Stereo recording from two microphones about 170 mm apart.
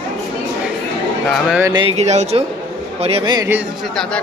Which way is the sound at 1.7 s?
25° right (ahead or behind).